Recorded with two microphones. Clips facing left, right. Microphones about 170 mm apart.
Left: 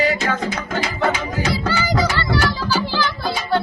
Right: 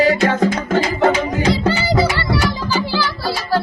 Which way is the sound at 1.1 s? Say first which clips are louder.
Right 5 dB; 30° right (ahead or behind).